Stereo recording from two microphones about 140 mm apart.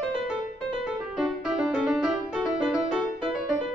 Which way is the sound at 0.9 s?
5° right (ahead or behind).